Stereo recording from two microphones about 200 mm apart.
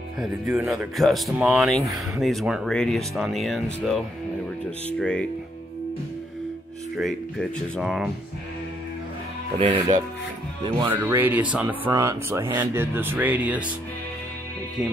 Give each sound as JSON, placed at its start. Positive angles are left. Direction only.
{"t": 0.2, "sound": "speech", "side_deg": -5}
{"t": 7.0, "sound": "speech", "side_deg": 0}
{"t": 9.6, "sound": "speech", "side_deg": -25}
{"t": 10.7, "sound": "speech", "side_deg": -15}